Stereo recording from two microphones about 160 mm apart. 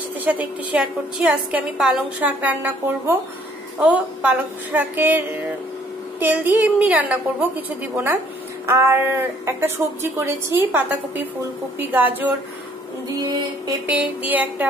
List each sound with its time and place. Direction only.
0.2 s a woman's voice: 10° right (ahead or behind)
13.8 s a woman's voice: 10° right (ahead or behind)